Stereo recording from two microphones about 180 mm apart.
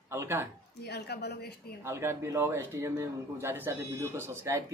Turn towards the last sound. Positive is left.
turn(degrees=-15)  # may be behind; listen again after turning